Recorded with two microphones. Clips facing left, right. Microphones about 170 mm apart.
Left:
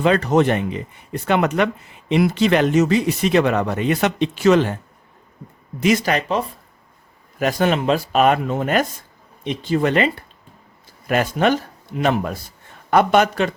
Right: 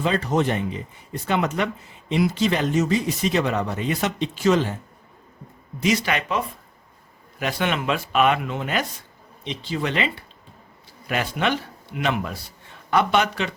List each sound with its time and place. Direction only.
0.0 s speech: 70° left (ahead or behind)
5.8 s a man's voice: 50° left (ahead or behind)